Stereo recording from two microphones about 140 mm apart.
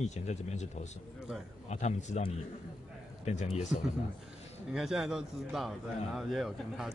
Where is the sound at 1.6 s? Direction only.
55° left (ahead or behind).